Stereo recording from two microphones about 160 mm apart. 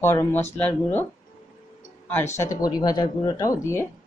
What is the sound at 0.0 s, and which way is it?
Speech, 15° left (ahead or behind).